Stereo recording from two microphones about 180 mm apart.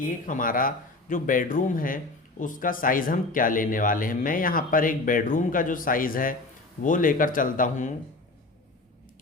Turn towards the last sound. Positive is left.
turn(degrees=45)  # may be behind; listen again after turning